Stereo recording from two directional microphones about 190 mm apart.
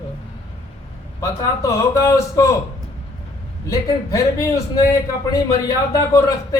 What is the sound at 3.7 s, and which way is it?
A man's voice, 15° left (ahead or behind).